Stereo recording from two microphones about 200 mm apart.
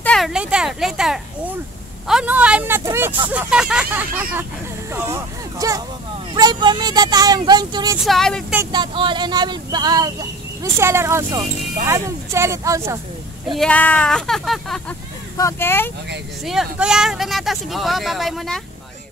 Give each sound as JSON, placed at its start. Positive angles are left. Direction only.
{"t": 0.0, "sound": "speech", "side_deg": 0}
{"t": 8.0, "sound": "speech", "side_deg": 0}
{"t": 8.5, "sound": "speech", "side_deg": -25}
{"t": 13.5, "sound": "speech", "side_deg": 5}
{"t": 15.3, "sound": "speech", "side_deg": 15}
{"t": 16.4, "sound": "speech", "side_deg": -5}